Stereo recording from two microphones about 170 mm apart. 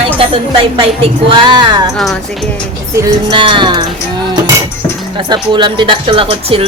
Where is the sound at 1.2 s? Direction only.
25° right (ahead or behind).